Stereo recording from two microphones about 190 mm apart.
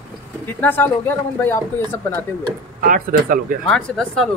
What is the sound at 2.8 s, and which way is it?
Speech, 45° right (ahead or behind).